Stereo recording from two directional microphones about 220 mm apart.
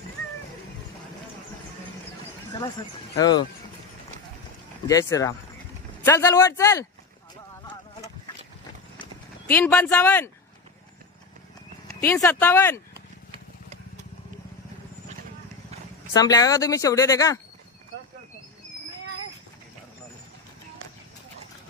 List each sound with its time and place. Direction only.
3.2 s speech: 20° left (ahead or behind)
4.8 s speech: 15° left (ahead or behind)
9.5 s speech: 10° left (ahead or behind)
12.1 s speech: 10° left (ahead or behind)
16.1 s speech: 15° left (ahead or behind)